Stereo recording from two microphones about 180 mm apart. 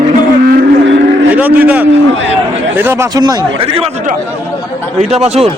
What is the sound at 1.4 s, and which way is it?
Speech, 10° right (ahead or behind).